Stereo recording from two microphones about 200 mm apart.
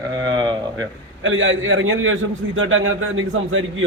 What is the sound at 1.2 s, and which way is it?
A man's voice, 75° right (ahead or behind).